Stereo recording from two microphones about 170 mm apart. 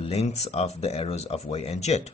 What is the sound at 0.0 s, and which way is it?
Speech, 40° left (ahead or behind).